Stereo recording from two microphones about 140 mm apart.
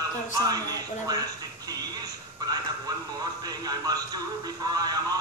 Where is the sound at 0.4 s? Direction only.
25° right (ahead or behind).